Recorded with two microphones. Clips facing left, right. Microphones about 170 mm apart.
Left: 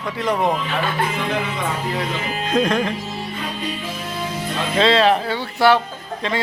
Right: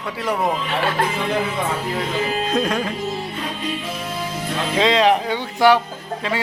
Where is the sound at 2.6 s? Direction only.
10° right (ahead or behind).